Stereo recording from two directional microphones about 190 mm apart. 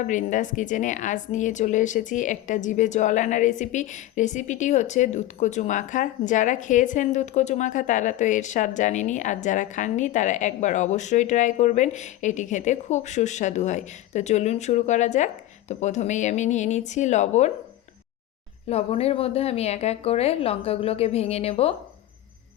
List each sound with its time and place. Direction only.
0.0 s a woman's voice: 40° left (ahead or behind)
18.7 s a woman's voice: 30° left (ahead or behind)